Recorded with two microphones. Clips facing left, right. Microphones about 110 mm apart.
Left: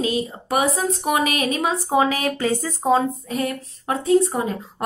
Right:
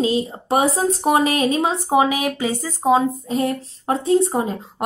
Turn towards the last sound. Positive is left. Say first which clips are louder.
# right 1 dB
turn(degrees=-25)  # may be behind; listen again after turning